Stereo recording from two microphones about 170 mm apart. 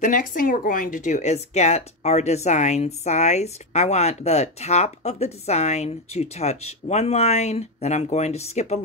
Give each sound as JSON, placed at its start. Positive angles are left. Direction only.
{"t": 0.0, "sound": "speech", "side_deg": 50}